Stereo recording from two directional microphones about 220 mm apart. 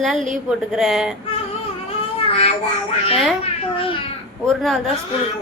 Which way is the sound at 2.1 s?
25° left (ahead or behind).